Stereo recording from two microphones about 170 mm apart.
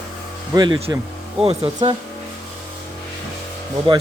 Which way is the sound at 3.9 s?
30° right (ahead or behind).